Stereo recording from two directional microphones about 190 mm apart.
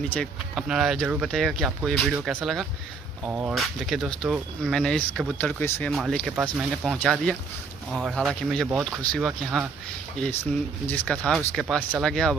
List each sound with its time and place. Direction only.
0.1 s speech: centre (ahead or behind)